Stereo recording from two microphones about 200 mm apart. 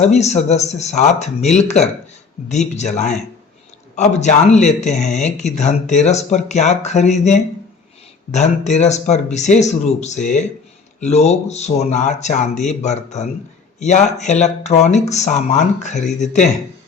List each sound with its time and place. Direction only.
0.0 s speech: 35° left (ahead or behind)